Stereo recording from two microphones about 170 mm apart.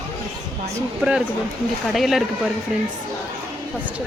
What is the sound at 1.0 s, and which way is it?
A woman's voice, 5° right (ahead or behind).